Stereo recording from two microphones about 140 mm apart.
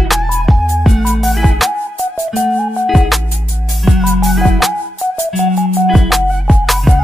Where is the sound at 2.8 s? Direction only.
Centre (ahead or behind).